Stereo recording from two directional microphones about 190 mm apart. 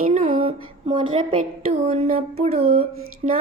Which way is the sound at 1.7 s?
30° right (ahead or behind).